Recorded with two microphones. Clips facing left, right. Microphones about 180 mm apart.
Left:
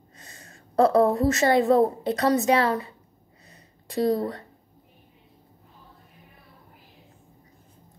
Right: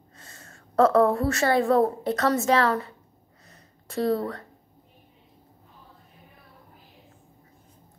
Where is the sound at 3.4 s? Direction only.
15° left (ahead or behind).